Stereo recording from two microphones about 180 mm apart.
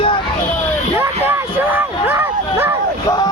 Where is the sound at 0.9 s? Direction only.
10° right (ahead or behind).